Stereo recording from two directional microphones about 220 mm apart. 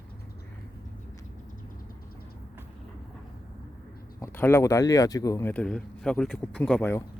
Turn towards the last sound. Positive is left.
turn(degrees=10)  # may be behind; listen again after turning